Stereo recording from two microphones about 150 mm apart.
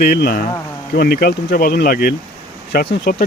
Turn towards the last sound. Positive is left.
turn(degrees=85)